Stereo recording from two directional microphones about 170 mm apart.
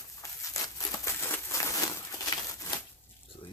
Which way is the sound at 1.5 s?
15° left (ahead or behind).